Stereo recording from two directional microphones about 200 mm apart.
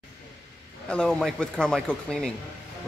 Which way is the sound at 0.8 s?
5° left (ahead or behind).